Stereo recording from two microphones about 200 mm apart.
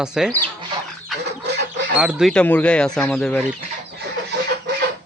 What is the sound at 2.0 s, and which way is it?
Speech, 5° right (ahead or behind).